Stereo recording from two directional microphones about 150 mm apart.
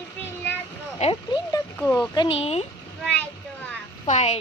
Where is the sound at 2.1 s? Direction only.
40° left (ahead or behind).